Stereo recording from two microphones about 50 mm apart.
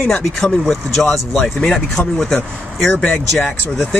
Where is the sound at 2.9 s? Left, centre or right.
Left.